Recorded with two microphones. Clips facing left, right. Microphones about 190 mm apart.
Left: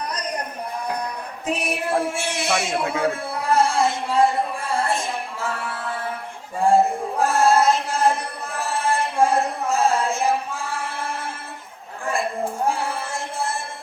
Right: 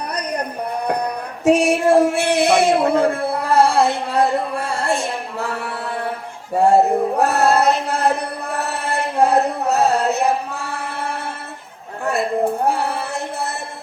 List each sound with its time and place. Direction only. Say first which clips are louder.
0.1 s a sound: right 4 dB; 60° right (ahead or behind)
0.9 s music: right 6 dB; 65° right (ahead or behind)
6.6 s male singing: right 4 dB; 65° right (ahead or behind)
12.6 s music: right 4 dB; 65° right (ahead or behind)